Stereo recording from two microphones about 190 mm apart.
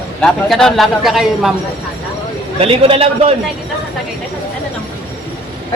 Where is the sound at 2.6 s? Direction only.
30° right (ahead or behind).